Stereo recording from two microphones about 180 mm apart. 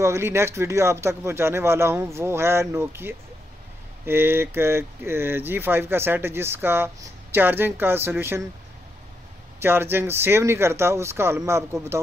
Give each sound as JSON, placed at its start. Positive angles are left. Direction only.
{"t": 0.0, "sound": "speech", "side_deg": -15}
{"t": 9.6, "sound": "speech", "side_deg": -15}